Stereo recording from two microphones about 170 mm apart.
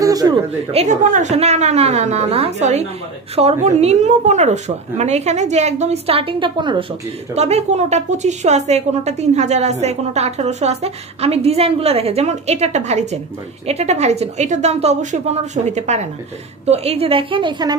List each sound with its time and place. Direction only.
0.0 s a sound: 20° right (ahead or behind)
0.7 s a woman's voice: 45° right (ahead or behind); by 6.9 s 30° right (ahead or behind)
7.3 s a woman's voice: 40° right (ahead or behind)